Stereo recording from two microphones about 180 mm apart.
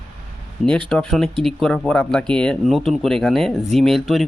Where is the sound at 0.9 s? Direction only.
Centre (ahead or behind).